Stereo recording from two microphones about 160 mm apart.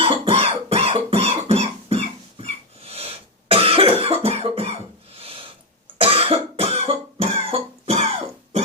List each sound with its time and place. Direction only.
0.0 s cough: 35° right (ahead or behind)